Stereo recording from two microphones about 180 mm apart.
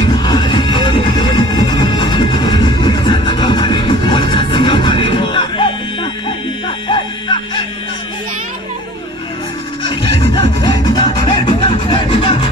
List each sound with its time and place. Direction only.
0.0 s music: 25° left (ahead or behind)
6.9 s music: 25° left (ahead or behind)
10.0 s music: 75° right (ahead or behind)
10.3 s music: 30° left (ahead or behind)